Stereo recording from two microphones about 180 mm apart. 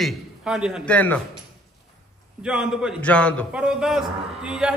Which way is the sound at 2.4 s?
5° right (ahead or behind).